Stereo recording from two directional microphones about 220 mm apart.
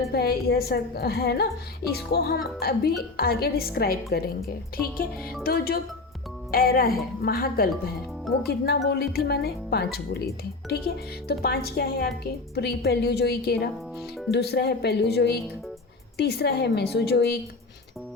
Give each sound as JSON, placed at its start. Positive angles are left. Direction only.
{"t": 0.1, "sound": "speech", "side_deg": 45}